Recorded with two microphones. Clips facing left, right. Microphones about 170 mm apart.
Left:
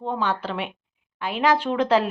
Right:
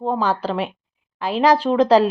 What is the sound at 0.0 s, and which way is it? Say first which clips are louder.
Speech: right 5 dB; 35° right (ahead or behind).